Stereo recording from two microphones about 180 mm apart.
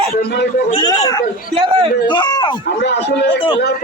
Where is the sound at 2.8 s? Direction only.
75° left (ahead or behind).